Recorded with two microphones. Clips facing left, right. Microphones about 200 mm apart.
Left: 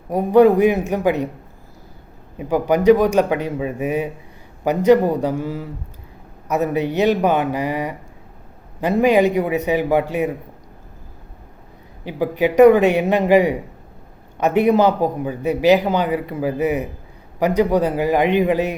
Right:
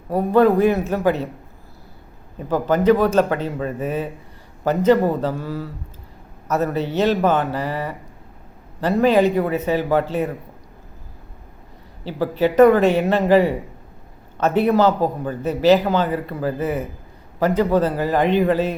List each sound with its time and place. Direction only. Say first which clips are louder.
0.1 s a man's voice: left 3 dB; 15° left (ahead or behind)
2.4 s a man's voice: left 2 dB; 15° left (ahead or behind)
12.0 s a man's voice: left 1 dB; 15° left (ahead or behind)